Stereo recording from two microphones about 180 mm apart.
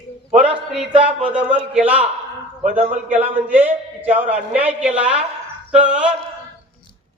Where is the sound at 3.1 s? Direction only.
10° right (ahead or behind).